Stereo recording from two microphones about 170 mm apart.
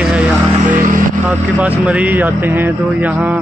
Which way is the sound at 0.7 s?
55° right (ahead or behind).